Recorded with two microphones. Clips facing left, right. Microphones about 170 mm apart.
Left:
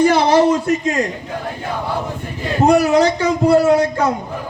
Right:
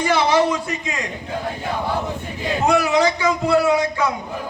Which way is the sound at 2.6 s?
40° left (ahead or behind).